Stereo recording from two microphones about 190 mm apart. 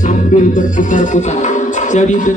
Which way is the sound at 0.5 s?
40° left (ahead or behind).